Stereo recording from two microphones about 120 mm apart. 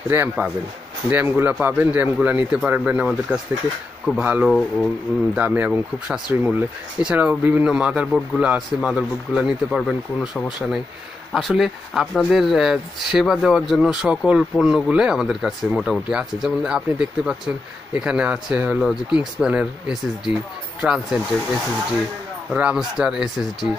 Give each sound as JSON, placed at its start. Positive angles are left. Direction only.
{"t": 0.1, "sound": "speech", "side_deg": -15}
{"t": 5.4, "sound": "speech", "side_deg": -15}
{"t": 22.5, "sound": "speech", "side_deg": -5}